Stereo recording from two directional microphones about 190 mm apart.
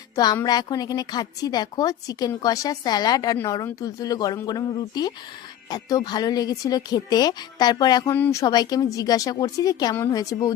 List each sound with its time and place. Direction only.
0.4 s a woman's voice: 20° left (ahead or behind)